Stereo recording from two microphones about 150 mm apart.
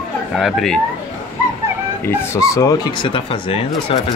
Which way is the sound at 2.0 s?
20° left (ahead or behind).